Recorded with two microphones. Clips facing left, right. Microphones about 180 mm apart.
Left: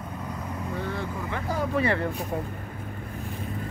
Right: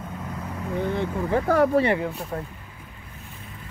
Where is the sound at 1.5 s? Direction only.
60° right (ahead or behind).